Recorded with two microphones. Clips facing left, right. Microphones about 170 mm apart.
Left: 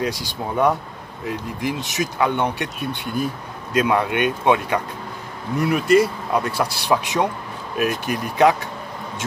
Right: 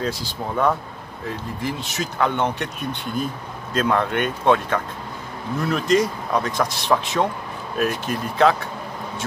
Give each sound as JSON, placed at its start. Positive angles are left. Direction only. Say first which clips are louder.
{"t": 0.0, "sound": "speech", "louder": "left 1 dB", "side_deg": 15}